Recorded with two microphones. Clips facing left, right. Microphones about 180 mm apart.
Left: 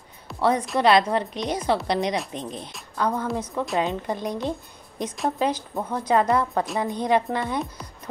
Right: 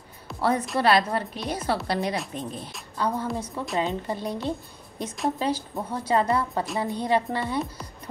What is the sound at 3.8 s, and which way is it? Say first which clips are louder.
Speech: left 2 dB; 15° left (ahead or behind).